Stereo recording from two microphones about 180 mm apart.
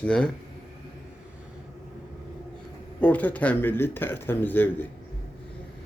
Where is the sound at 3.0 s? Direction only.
10° left (ahead or behind).